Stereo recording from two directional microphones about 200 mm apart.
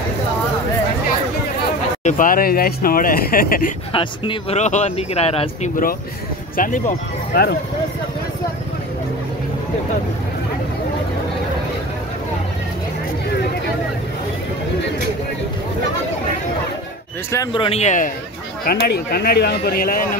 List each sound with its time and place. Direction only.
2.0 s speech: 40° left (ahead or behind)
3.9 s speech: 25° left (ahead or behind)
6.5 s speech: 40° left (ahead or behind)
17.3 s speech: 20° left (ahead or behind); by 18.1 s 40° left (ahead or behind)
18.7 s speech: 50° left (ahead or behind)